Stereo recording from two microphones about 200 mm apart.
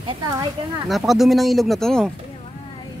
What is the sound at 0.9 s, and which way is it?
Speech, centre (ahead or behind).